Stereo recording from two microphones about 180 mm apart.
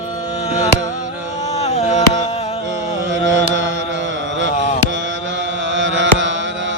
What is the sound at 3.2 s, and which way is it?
Carnatic music, 90° right.